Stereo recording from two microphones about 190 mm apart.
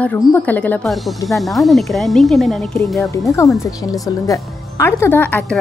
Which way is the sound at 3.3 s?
15° left (ahead or behind).